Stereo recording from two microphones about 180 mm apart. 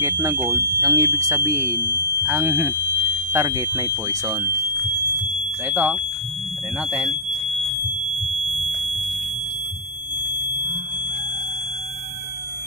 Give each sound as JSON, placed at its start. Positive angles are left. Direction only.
{"t": 0.0, "sound": "speech", "side_deg": -15}
{"t": 1.8, "sound": "speech", "side_deg": 15}
{"t": 2.2, "sound": "speech", "side_deg": -15}
{"t": 5.7, "sound": "speech", "side_deg": -5}
{"t": 8.3, "sound": "fire alarm", "side_deg": 0}